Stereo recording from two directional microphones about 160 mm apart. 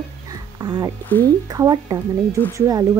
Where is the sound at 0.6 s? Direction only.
25° right (ahead or behind).